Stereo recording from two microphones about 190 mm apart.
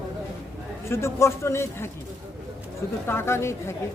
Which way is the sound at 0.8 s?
15° left (ahead or behind).